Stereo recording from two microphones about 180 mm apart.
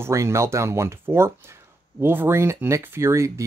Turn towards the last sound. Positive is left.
turn(degrees=-15)  # may be behind; listen again after turning